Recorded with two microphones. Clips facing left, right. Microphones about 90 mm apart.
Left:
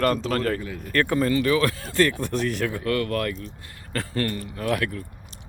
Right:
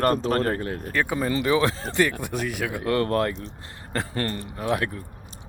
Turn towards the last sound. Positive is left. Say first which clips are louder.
# even
turn(degrees=-25)  # may be behind; listen again after turning